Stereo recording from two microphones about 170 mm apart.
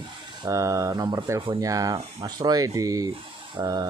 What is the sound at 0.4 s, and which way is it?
Speech, 20° right (ahead or behind).